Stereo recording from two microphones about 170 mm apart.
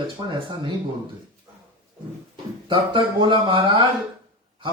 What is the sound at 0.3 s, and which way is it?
Speech, 25° right (ahead or behind).